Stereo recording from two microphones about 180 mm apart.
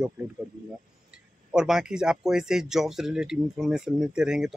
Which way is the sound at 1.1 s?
5° right (ahead or behind).